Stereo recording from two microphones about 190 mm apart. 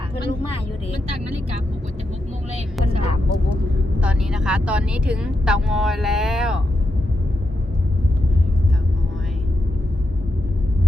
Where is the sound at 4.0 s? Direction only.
5° right (ahead or behind).